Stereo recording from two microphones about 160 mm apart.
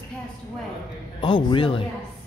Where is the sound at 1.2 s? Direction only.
30° left (ahead or behind).